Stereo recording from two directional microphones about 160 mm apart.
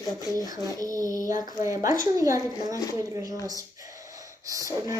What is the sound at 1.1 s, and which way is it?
A woman's voice, 20° right (ahead or behind).